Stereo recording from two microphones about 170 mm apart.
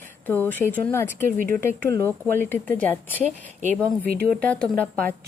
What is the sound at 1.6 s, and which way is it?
A woman's voice, 15° left (ahead or behind).